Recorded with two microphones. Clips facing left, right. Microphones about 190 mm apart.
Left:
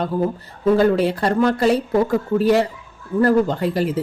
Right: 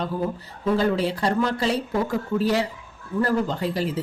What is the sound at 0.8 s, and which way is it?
A woman's voice, 55° left (ahead or behind).